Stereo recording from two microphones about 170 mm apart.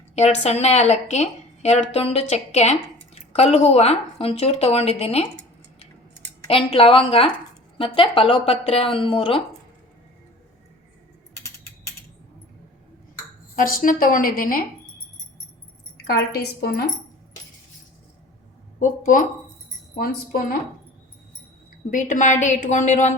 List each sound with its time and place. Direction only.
0.2 s a woman's voice: 40° left (ahead or behind)
6.5 s a woman's voice: 35° left (ahead or behind)
13.6 s a woman's voice: 55° left (ahead or behind)
16.0 s a woman's voice: 70° left (ahead or behind)
18.8 s a woman's voice: 50° left (ahead or behind)
21.8 s a woman's voice: 50° left (ahead or behind)